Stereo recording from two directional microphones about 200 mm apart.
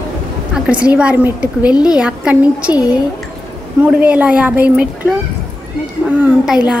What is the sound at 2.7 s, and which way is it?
Speech, 20° left (ahead or behind).